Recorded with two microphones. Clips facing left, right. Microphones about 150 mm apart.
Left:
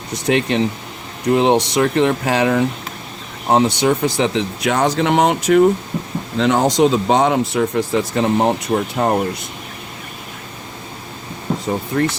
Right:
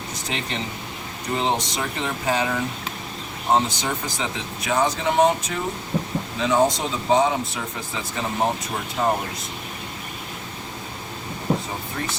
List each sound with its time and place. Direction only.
0.1 s speech: 70° left (ahead or behind)
7.8 s speech: 70° left (ahead or behind)
11.9 s speech: 55° left (ahead or behind)